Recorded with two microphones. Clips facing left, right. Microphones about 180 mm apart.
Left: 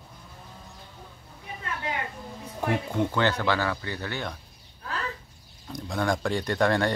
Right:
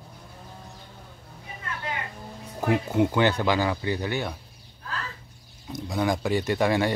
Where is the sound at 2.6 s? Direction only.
5° right (ahead or behind).